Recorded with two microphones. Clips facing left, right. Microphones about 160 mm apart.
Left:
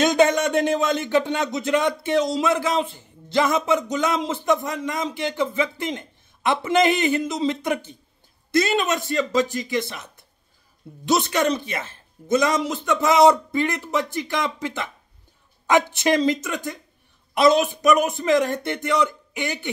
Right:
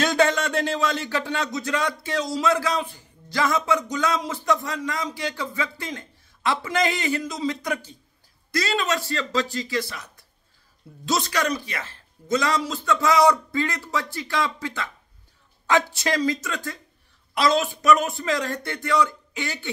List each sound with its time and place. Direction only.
0.0 s speech: 20° left (ahead or behind)